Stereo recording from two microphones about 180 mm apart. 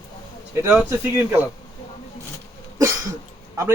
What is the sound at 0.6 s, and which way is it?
Speech, 10° right (ahead or behind).